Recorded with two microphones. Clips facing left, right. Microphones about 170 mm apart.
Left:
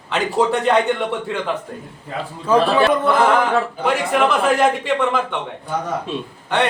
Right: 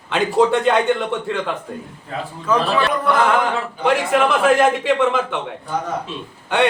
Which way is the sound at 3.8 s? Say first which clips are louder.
Right 4 dB; centre (ahead or behind).